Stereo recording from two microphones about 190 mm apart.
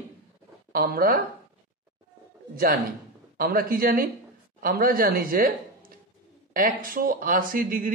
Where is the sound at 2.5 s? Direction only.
50° right (ahead or behind).